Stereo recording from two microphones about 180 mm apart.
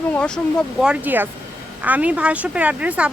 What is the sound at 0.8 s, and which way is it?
A woman's voice, 5° right (ahead or behind).